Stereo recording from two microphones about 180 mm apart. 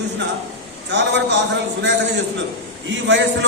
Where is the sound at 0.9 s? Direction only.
80° right.